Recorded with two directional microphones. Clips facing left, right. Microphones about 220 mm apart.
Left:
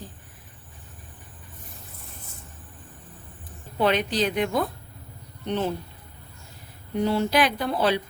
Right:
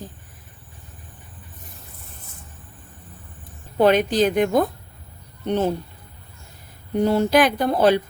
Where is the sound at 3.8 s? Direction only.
45° right (ahead or behind).